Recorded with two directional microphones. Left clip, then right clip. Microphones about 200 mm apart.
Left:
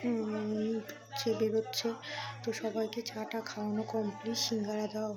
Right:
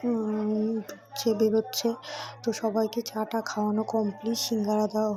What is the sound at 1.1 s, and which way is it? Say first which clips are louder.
Speech: right 7 dB; 25° right (ahead or behind).